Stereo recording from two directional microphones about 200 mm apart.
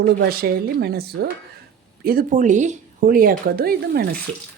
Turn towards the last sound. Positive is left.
turn(degrees=-50)  # may be behind; listen again after turning